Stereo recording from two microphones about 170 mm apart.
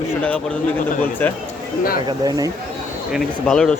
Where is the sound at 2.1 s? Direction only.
20° right (ahead or behind).